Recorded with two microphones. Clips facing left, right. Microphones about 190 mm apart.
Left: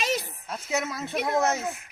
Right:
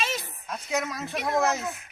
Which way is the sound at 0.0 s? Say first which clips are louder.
Left 3 dB; 35° left (ahead or behind).